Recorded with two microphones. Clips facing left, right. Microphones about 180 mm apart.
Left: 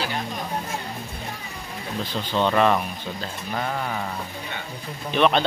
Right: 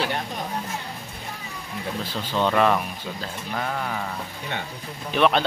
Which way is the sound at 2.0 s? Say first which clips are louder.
Left 1 dB; 5° right (ahead or behind).